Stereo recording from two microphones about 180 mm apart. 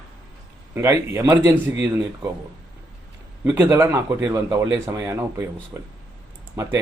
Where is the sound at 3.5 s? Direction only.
15° right (ahead or behind).